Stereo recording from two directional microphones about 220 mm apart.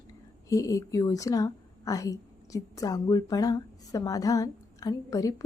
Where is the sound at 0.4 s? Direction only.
15° left (ahead or behind).